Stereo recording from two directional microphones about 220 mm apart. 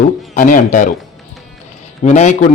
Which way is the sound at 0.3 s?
35° left (ahead or behind).